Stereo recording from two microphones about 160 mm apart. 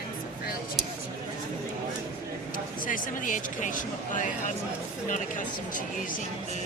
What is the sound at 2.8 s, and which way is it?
Speech, 55° left (ahead or behind).